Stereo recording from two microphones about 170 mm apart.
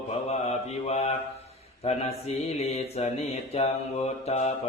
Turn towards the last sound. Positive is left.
turn(degrees=40)  # may be behind; listen again after turning